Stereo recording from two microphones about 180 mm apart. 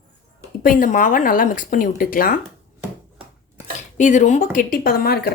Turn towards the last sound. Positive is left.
turn(degrees=60)  # may be behind; listen again after turning